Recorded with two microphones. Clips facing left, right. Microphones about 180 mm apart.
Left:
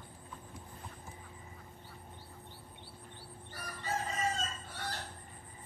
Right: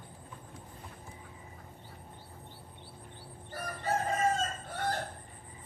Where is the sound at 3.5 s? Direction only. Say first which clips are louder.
Right 6 dB; 55° right (ahead or behind).